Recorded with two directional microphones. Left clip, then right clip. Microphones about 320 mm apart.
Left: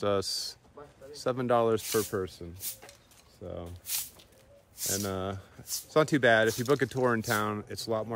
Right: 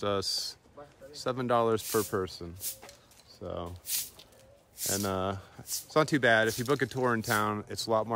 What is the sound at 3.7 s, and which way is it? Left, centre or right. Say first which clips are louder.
Speech: right 1 dB; left.